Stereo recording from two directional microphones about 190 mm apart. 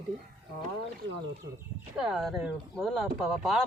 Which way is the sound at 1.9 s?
5° right (ahead or behind).